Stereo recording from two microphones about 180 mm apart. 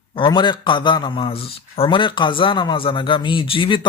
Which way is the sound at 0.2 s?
25° left (ahead or behind).